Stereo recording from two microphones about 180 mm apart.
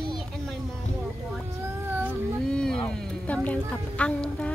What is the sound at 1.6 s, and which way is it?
Cat, 10° right (ahead or behind).